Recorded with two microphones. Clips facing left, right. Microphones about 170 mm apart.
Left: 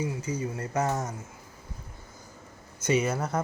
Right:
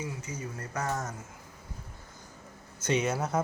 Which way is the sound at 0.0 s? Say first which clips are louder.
Left 7 dB; 30° left (ahead or behind).